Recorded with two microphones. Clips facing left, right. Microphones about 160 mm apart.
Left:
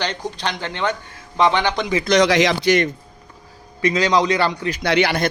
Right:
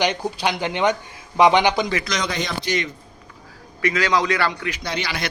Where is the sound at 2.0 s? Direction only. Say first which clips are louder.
Left 11 dB; 75° left (ahead or behind).